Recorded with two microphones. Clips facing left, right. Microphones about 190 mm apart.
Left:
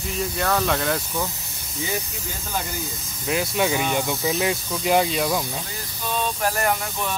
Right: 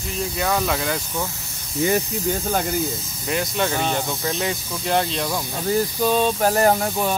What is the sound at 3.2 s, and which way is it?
Speech, 5° left (ahead or behind).